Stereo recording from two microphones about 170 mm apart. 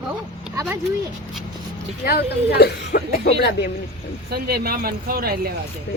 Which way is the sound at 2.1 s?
70° left (ahead or behind).